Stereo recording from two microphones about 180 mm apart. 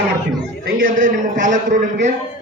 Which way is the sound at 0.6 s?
50° right (ahead or behind).